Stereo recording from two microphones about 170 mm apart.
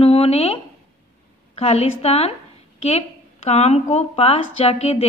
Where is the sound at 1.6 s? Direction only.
35° left (ahead or behind).